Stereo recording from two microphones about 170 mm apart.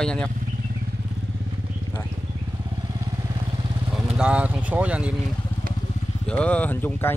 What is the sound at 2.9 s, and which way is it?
Vehicle, 25° right (ahead or behind).